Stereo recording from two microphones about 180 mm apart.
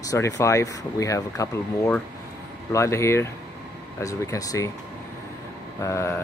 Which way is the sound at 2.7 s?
15° left (ahead or behind).